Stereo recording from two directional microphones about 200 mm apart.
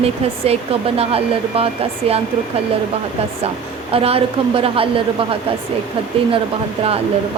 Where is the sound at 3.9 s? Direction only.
30° right (ahead or behind).